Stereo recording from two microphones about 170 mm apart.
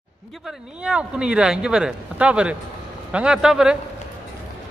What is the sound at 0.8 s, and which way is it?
Speech, 5° right (ahead or behind).